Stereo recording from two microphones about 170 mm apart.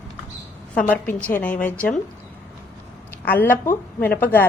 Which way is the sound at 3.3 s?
10° left (ahead or behind).